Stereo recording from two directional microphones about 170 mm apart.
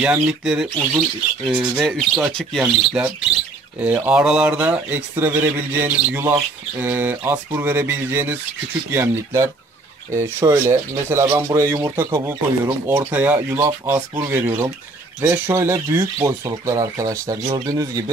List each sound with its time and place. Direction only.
0.0 s speech: 5° right (ahead or behind); by 18.1 s 20° right (ahead or behind)